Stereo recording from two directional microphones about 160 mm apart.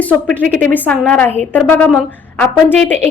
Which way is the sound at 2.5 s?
Centre (ahead or behind).